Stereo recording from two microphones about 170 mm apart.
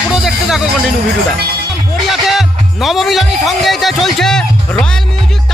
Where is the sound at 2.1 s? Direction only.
Centre (ahead or behind).